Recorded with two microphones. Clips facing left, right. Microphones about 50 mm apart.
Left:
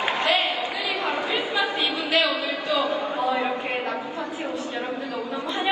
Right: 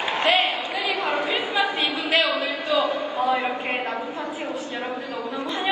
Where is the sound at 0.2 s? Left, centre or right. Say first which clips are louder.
Right 4 dB; right.